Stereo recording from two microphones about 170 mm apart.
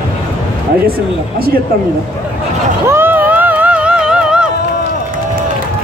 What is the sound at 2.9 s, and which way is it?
Music, 15° right (ahead or behind).